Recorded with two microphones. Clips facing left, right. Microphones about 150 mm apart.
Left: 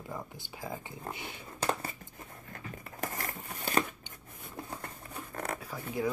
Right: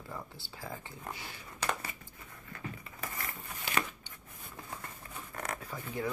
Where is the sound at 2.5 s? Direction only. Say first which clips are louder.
Right 2 dB; 45° left (ahead or behind).